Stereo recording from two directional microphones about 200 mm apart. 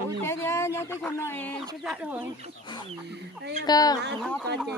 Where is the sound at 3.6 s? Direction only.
20° left (ahead or behind).